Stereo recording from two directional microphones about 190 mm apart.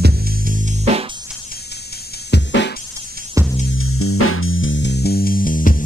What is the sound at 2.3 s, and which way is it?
Music, 65° left (ahead or behind).